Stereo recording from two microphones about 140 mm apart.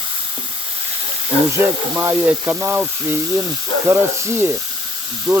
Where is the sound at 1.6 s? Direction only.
15° right (ahead or behind).